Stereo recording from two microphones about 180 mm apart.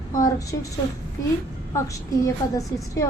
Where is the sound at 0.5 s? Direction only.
15° left (ahead or behind).